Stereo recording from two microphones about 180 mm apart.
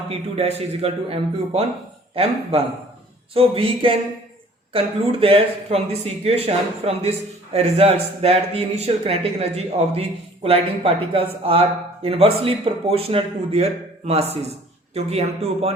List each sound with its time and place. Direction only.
0.1 s a man's voice: 35° right (ahead or behind)